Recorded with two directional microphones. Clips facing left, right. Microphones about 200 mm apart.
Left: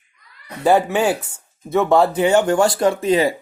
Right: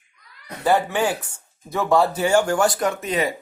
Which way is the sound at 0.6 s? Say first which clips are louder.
Left 4 dB; 20° left (ahead or behind).